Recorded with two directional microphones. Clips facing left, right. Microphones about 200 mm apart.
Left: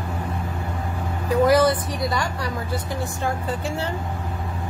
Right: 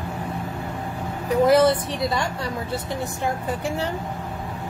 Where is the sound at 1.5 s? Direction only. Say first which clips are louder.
Right 2 dB; 25° right (ahead or behind).